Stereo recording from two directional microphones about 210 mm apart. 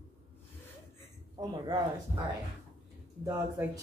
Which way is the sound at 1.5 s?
20° right (ahead or behind).